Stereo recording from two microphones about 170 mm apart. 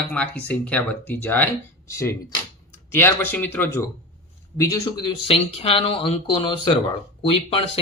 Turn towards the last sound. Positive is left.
turn(degrees=35)  # may be behind; listen again after turning